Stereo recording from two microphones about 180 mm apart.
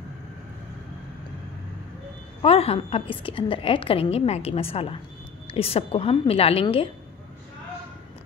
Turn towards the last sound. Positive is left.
turn(degrees=30)  # may be behind; listen again after turning